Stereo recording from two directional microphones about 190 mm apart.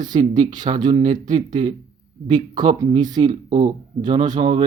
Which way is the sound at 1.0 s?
40° right (ahead or behind).